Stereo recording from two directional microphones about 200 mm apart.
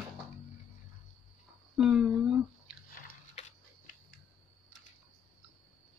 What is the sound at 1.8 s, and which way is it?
Speech, 5° right (ahead or behind).